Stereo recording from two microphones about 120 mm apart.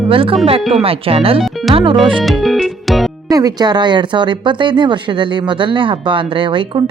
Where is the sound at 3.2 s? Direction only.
30° right (ahead or behind).